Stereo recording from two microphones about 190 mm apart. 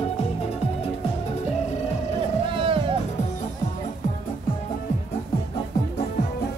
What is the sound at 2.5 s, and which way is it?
Music, 30° right (ahead or behind).